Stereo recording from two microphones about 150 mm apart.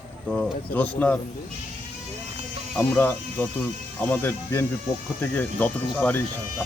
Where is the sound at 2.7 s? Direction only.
10° left (ahead or behind).